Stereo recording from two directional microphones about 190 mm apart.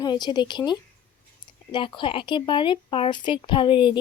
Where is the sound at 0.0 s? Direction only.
25° left (ahead or behind).